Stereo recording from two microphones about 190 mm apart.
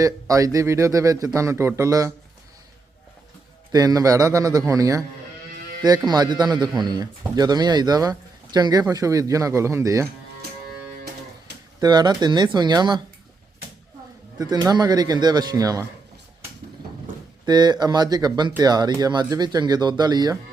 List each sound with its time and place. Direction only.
0.0 s speech: 20° right (ahead or behind)
3.7 s speech: 20° right (ahead or behind)
6.1 s speech: 20° right (ahead or behind)
11.8 s speech: 20° right (ahead or behind)
14.3 s speech: 20° right (ahead or behind)
17.4 s speech: 20° right (ahead or behind)